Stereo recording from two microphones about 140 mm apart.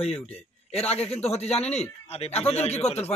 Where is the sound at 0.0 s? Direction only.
50° left (ahead or behind).